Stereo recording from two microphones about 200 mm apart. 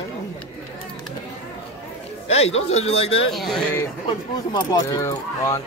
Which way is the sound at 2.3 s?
30° left (ahead or behind).